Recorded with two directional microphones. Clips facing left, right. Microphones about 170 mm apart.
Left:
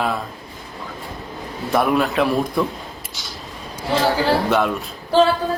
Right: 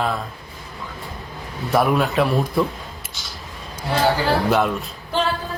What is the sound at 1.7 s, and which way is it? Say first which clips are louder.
Speech: even; centre (ahead or behind).